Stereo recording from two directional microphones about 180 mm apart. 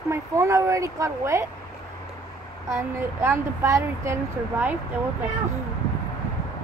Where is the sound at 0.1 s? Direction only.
15° right (ahead or behind).